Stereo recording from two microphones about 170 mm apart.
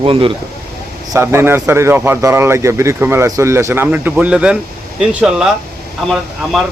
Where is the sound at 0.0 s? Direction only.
30° right (ahead or behind).